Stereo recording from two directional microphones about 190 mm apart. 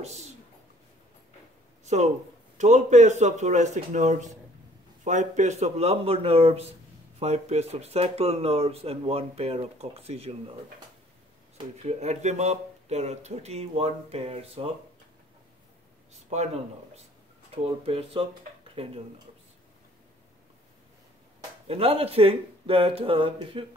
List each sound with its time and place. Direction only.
0.0 s speech: 35° right (ahead or behind)
2.5 s speech: 40° right (ahead or behind)
11.5 s speech: 35° right (ahead or behind)
16.1 s a sound: 35° right (ahead or behind)
17.8 s speech: 30° right (ahead or behind)
21.6 s speech: 30° right (ahead or behind)